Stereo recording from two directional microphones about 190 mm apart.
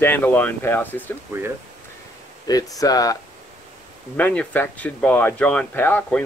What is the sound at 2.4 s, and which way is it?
Speech, 20° left (ahead or behind).